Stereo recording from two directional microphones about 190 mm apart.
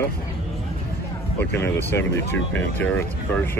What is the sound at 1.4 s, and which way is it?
Speech, 10° left (ahead or behind).